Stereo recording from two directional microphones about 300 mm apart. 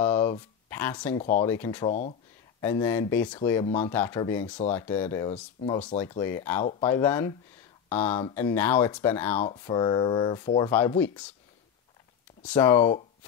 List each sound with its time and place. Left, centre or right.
0.0 s speech: centre
1.9 s speech: left
2.6 s speech: centre
12.4 s speech: centre